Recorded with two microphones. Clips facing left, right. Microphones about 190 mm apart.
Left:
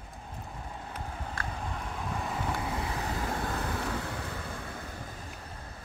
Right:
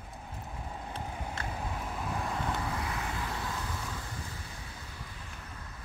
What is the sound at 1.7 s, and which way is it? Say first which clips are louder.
Vehicle: even; centre (ahead or behind).